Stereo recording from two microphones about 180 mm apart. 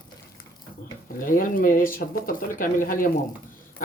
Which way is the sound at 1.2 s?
50° left (ahead or behind).